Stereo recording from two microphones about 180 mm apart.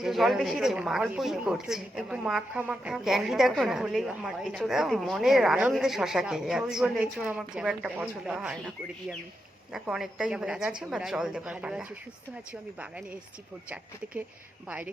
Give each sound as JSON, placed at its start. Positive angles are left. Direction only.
{"t": 0.0, "sound": "a woman's voice", "side_deg": 0}